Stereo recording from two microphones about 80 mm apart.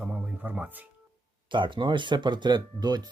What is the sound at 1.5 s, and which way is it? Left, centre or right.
Speech, right.